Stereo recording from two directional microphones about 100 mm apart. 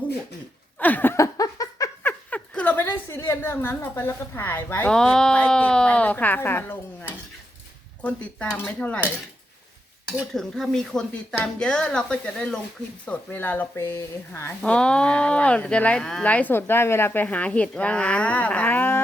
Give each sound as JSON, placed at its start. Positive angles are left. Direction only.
{"t": 0.8, "sound": "speech", "side_deg": 15}
{"t": 1.1, "sound": "laughter", "side_deg": 35}
{"t": 2.0, "sound": "a sound", "side_deg": 15}
{"t": 4.9, "sound": "speech", "side_deg": 5}
{"t": 8.0, "sound": "speech", "side_deg": 15}
{"t": 10.3, "sound": "speech", "side_deg": 5}
{"t": 14.6, "sound": "speech", "side_deg": 10}